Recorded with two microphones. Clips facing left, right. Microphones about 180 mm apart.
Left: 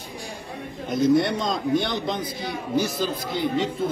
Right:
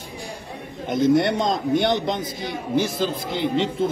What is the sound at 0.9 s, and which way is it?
Speech, 25° right (ahead or behind).